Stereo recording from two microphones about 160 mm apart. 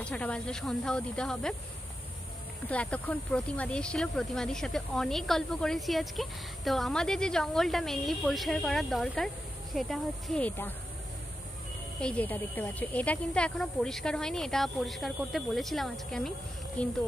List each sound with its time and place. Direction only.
0.0 s speech: 5° left (ahead or behind)
2.7 s speech: 10° left (ahead or behind)
12.0 s speech: 10° left (ahead or behind)